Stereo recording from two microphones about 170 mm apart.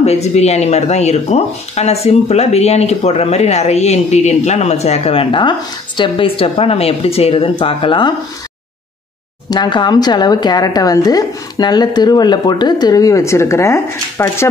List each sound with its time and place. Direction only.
0.0 s speech: 40° left (ahead or behind)
9.5 s a woman's voice: 25° left (ahead or behind)